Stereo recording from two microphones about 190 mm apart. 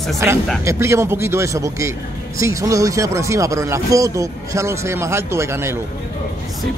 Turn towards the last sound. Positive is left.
turn(degrees=-15)  # may be behind; listen again after turning